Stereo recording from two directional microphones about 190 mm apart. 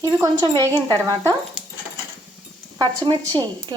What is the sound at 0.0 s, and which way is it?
Speech, 20° right (ahead or behind).